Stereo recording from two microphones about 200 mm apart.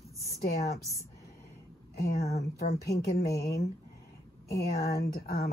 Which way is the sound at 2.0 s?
50° left (ahead or behind).